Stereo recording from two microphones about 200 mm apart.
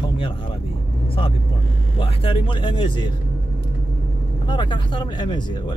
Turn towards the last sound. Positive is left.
turn(degrees=20)  # may be behind; listen again after turning